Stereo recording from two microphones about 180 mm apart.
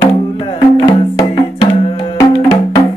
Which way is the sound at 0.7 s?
25° left (ahead or behind).